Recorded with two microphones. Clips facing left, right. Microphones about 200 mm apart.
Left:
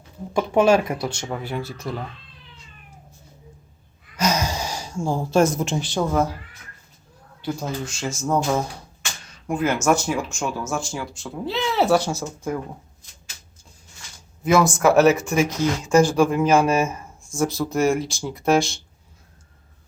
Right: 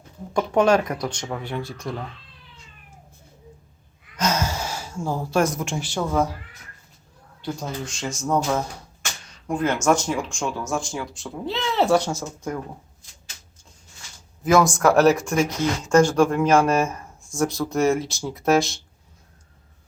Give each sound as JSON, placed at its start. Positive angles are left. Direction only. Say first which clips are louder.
{"t": 0.3, "sound": "speech", "louder": "left 1 dB", "side_deg": 5}
{"t": 4.2, "sound": "gasp", "louder": "left 1 dB", "side_deg": 10}
{"t": 4.9, "sound": "speech", "louder": "left 3 dB", "side_deg": 25}
{"t": 6.1, "sound": "speech", "louder": "even", "side_deg": 0}
{"t": 7.4, "sound": "speech", "louder": "left 2 dB", "side_deg": 5}
{"t": 14.4, "sound": "speech", "louder": "even", "side_deg": 0}